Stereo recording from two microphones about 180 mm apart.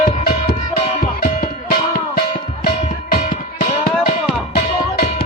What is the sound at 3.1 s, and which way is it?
Music, 50° left (ahead or behind).